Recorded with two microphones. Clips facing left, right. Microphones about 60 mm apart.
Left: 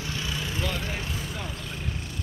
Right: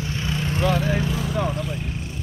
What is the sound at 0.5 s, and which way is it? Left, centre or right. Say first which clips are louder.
Vehicle: right 12 dB; right.